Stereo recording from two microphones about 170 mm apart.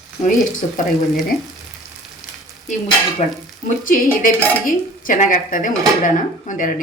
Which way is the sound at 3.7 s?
55° left (ahead or behind).